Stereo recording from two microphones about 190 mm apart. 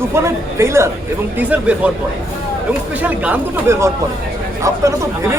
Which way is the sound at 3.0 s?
10° right (ahead or behind).